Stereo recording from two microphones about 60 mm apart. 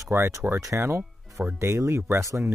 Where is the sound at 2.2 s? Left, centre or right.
Right.